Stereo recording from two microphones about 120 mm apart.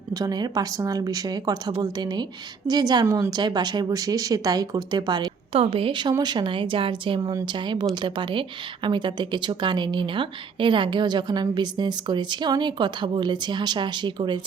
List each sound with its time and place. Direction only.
0.1 s a woman's voice: 35° right (ahead or behind)
5.5 s a woman's voice: 50° right (ahead or behind)